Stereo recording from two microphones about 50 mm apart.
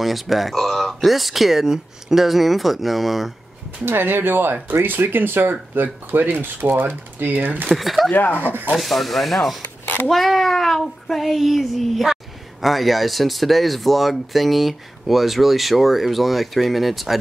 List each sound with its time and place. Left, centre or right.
0.0 s speech: centre
3.8 s speech: right
7.7 s speech: centre
8.1 s speech: left
8.5 s speech: right
8.7 s speech: centre
9.6 s a sound: left
10.0 s hands: centre
11.2 s speech: centre